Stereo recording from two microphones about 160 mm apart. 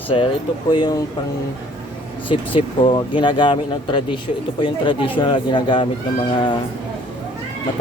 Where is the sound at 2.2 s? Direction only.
35° left (ahead or behind).